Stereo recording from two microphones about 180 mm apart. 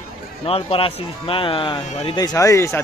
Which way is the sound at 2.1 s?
20° left (ahead or behind).